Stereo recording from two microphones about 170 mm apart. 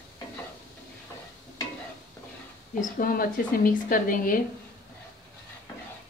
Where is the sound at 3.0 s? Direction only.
60° left (ahead or behind).